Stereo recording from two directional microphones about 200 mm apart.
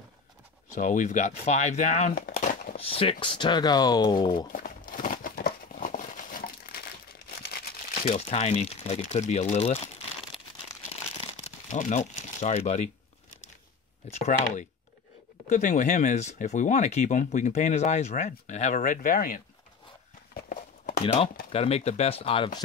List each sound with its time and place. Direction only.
0.7 s speech: 40° left (ahead or behind)
2.9 s speech: 30° left (ahead or behind)
4.5 s crumpling: 45° left (ahead or behind)
7.4 s speech: 50° left (ahead or behind); by 9.8 s 35° left (ahead or behind)
11.1 s crumpling: 35° left (ahead or behind)
14.2 s speech: 35° left (ahead or behind)
20.4 s walk: 40° left (ahead or behind)
21.5 s speech: 30° left (ahead or behind)